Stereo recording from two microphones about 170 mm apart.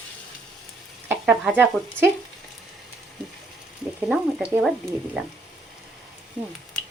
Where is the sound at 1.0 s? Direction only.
10° right (ahead or behind).